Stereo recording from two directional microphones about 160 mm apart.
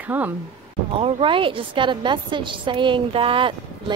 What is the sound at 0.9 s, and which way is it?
A woman's voice, 35° right (ahead or behind).